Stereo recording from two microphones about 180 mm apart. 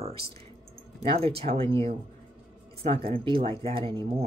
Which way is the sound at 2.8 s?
30° right (ahead or behind).